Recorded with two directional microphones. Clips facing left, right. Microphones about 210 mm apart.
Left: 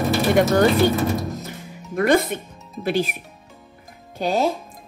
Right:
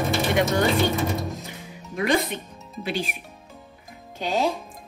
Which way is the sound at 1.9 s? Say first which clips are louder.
Left 5 dB; 50° left (ahead or behind).